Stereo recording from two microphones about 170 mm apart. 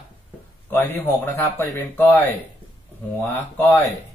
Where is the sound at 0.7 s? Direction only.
10° left (ahead or behind).